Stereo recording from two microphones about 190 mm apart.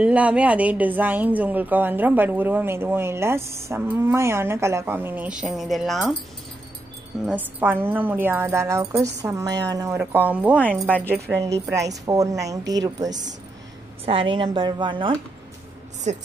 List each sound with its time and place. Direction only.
0.0 s a woman's voice: 5° right (ahead or behind)
7.2 s a woman's voice: 10° right (ahead or behind)
10.6 s speech: 10° left (ahead or behind)
11.1 s a woman's voice: 15° right (ahead or behind)
16.1 s a woman's voice: 35° right (ahead or behind)